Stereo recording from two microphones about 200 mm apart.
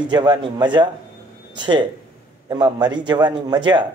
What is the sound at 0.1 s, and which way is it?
Speech, 20° right (ahead or behind).